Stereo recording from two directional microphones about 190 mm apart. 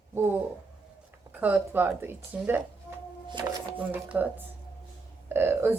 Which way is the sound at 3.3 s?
25° right (ahead or behind).